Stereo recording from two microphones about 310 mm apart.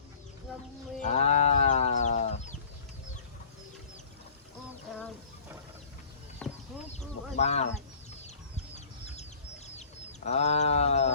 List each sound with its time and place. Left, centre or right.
1.0 s chicken: left
6.4 s chicken: centre
7.3 s speech: left
8.7 s chicken: left
9.6 s a sound: left